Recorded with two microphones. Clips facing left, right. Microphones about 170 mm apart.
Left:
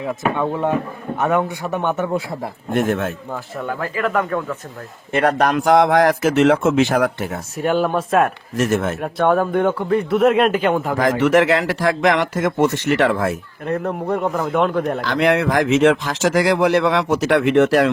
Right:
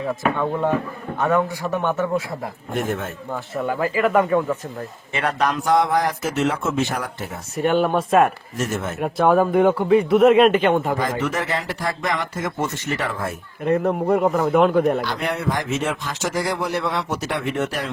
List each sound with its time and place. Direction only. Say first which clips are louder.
0.3 s a man's voice: left 1 dB; 15° left (ahead or behind)
2.7 s speech: left 6 dB; 75° left (ahead or behind)
3.6 s speech: right 3 dB; 5° right (ahead or behind)
5.1 s a man's voice: left 5 dB; 50° left (ahead or behind)
5.5 s speech: left 6 dB; 90° left
7.5 s a man's voice: even; centre (ahead or behind)
8.5 s speech: left 6 dB; 80° left
9.0 s a man's voice: right 5 dB; centre (ahead or behind)
10.9 s speech: left 8 dB; 85° left
13.7 s a man's voice: right 3 dB; 5° right (ahead or behind)
15.0 s speech: left 7 dB; 90° left